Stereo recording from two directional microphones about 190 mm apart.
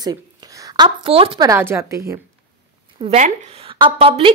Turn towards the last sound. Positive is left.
turn(degrees=-25)  # may be behind; listen again after turning